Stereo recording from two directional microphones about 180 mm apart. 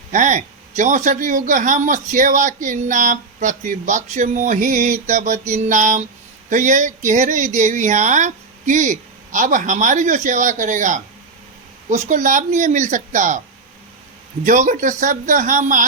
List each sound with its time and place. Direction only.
0.1 s speech: 45° right (ahead or behind)
14.4 s speech: 45° right (ahead or behind)